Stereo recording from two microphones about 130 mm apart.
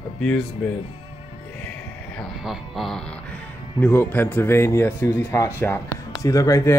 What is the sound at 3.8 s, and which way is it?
Speech, 15° left (ahead or behind).